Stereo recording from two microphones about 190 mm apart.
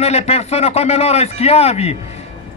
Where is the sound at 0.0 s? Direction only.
35° left (ahead or behind).